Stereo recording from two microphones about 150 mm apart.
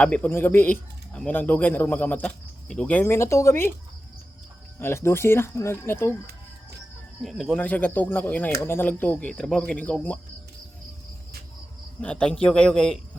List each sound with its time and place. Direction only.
0.0 s speech: 10° left (ahead or behind)
4.8 s speech: 15° left (ahead or behind)
7.2 s speech: centre (ahead or behind)
11.9 s speech: 10° left (ahead or behind)